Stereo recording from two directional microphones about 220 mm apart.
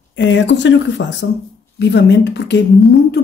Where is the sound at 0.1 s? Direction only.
55° left (ahead or behind).